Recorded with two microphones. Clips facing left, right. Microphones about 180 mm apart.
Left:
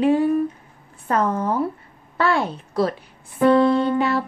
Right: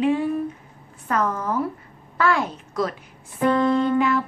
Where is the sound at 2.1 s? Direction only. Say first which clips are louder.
Left 1 dB; 30° left (ahead or behind).